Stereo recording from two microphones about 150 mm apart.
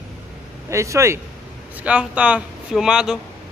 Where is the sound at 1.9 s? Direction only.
10° right (ahead or behind).